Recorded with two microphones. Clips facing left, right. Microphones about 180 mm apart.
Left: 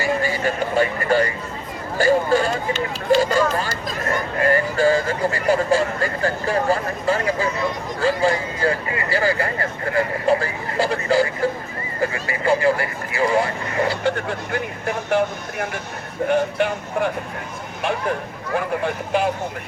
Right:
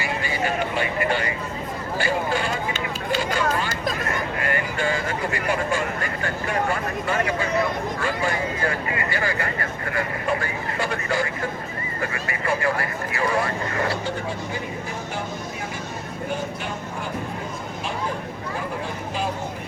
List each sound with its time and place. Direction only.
0.0 s vehicle: 40° left (ahead or behind)
2.0 s a sound: 40° left (ahead or behind)
7.9 s speech: 30° left (ahead or behind)
12.1 s vehicle: 30° left (ahead or behind)
14.0 s vehicle: 65° left (ahead or behind)
16.3 s speech: 65° left (ahead or behind)
18.5 s speech: 65° left (ahead or behind)